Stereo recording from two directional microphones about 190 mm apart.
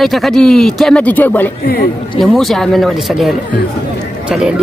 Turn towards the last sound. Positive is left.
turn(degrees=0)  # may be behind; listen again after turning